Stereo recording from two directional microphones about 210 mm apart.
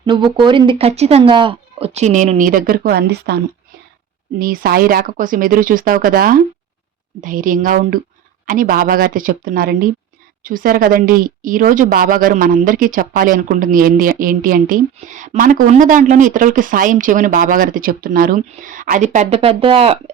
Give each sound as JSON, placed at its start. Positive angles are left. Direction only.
{"t": 0.0, "sound": "a woman's voice", "side_deg": -20}